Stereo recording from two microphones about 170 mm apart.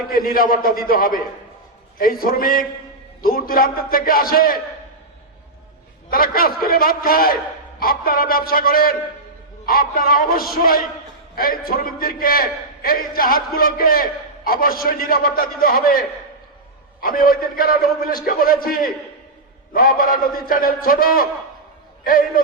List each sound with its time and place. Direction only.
0.1 s a man's voice: 55° left (ahead or behind)
6.1 s a man's voice: 60° left (ahead or behind)